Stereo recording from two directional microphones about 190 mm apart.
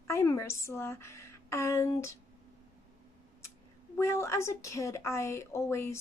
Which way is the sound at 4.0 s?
15° left (ahead or behind).